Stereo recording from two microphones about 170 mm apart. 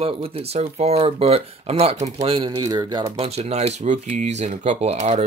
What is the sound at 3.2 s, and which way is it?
Speech, 35° right (ahead or behind).